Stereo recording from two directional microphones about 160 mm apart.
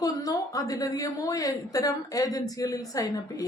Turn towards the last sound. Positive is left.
turn(degrees=20)  # may be behind; listen again after turning